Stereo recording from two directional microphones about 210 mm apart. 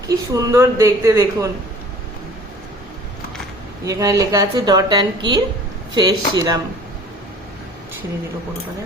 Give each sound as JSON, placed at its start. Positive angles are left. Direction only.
{"t": 0.3, "sound": "a woman's voice", "side_deg": -15}
{"t": 3.8, "sound": "a woman's voice", "side_deg": -15}